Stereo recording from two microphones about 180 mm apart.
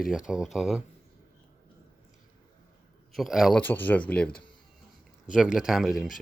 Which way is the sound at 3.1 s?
Centre (ahead or behind).